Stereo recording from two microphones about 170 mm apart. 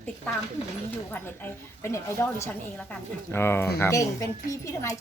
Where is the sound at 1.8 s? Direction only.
15° left (ahead or behind).